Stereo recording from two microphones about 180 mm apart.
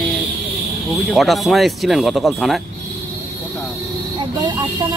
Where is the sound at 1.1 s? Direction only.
Centre (ahead or behind).